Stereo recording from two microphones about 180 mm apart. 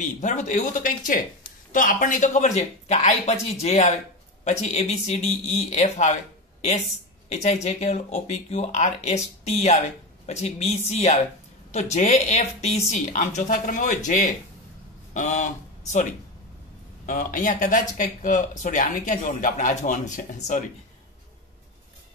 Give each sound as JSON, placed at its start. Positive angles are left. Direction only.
{"t": 0.0, "sound": "speech", "side_deg": 45}
{"t": 7.2, "sound": "speech", "side_deg": 40}